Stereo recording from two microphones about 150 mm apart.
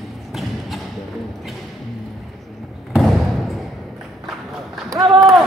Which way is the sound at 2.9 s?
Centre (ahead or behind).